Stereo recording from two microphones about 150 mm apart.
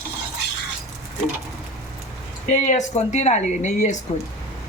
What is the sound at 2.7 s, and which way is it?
Speech, 50° left (ahead or behind).